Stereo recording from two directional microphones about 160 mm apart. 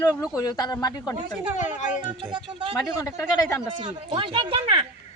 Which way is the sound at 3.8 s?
30° right (ahead or behind).